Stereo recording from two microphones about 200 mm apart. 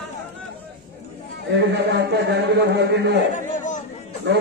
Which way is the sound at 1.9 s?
60° right (ahead or behind).